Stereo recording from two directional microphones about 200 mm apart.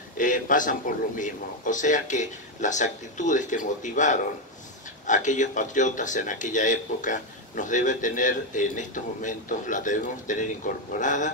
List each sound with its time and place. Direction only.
0.2 s speech: 40° left (ahead or behind)